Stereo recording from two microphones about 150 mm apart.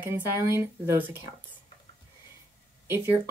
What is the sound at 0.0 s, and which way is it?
Speech, 15° right (ahead or behind).